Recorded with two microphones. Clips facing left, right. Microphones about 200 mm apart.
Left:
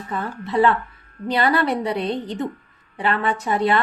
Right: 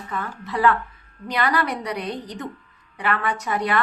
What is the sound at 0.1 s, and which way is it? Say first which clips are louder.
A woman's voice: left 5 dB; 25° left (ahead or behind).